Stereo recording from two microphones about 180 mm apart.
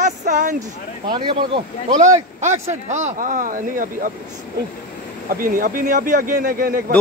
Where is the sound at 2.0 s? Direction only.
40° right (ahead or behind).